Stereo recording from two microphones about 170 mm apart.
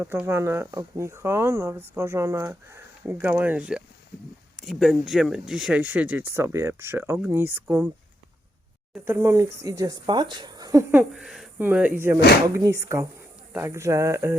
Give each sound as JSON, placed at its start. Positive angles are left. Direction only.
{"t": 0.0, "sound": "speech", "side_deg": -15}
{"t": 9.0, "sound": "speech", "side_deg": -15}
{"t": 11.1, "sound": "speech", "side_deg": 0}